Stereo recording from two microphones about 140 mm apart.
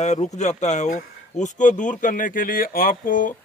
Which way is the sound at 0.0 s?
55° left (ahead or behind).